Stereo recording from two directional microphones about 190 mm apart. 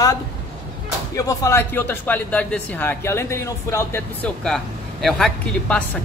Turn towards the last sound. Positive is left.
turn(degrees=5)  # may be behind; listen again after turning